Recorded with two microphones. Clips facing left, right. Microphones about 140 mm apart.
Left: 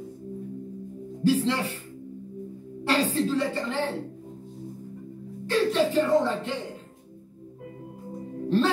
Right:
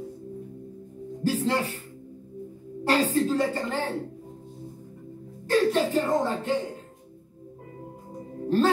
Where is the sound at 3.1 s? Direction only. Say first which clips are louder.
Right 1 dB; 45° right (ahead or behind).